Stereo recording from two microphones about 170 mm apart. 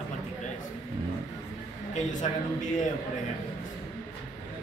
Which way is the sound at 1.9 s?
45° left (ahead or behind).